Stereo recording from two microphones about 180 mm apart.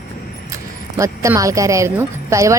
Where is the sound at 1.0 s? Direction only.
20° right (ahead or behind).